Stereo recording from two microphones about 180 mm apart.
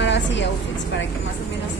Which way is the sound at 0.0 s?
80° left.